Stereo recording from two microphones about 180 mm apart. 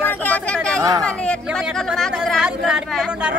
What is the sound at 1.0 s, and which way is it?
Speech, 5° left (ahead or behind).